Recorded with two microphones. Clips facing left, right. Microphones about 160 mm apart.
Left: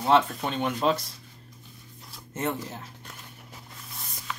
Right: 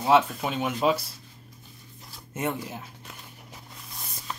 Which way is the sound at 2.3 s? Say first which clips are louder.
Even; 10° right (ahead or behind).